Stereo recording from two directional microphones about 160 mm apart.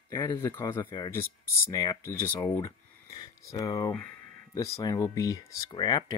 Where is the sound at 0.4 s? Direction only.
15° left (ahead or behind).